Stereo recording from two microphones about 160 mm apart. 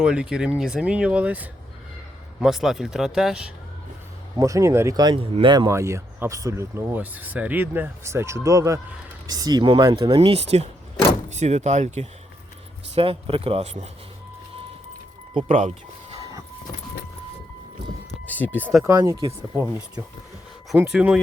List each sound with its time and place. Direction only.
0.0 s speech: 5° right (ahead or behind)
4.4 s speech: 20° right (ahead or behind)
10.2 s speech: 40° right (ahead or behind)
15.4 s speech: 50° right (ahead or behind)
18.3 s speech: 10° left (ahead or behind)
18.9 s speech: 20° right (ahead or behind); by 21.2 s 5° right (ahead or behind)